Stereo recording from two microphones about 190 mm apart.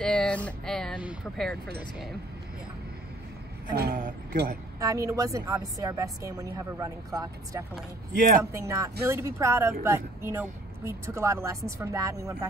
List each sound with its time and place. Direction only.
0.0 s a sound: 5° left (ahead or behind)
0.5 s speech: 5° left (ahead or behind)
3.7 s a man's voice: 50° right (ahead or behind)
4.7 s a woman's voice: 15° right (ahead or behind)